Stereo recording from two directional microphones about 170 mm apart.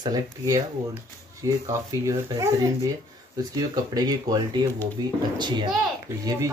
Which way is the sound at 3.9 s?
25° right (ahead or behind).